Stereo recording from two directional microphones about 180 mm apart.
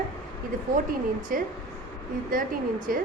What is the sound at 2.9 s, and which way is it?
Speech, 50° right (ahead or behind).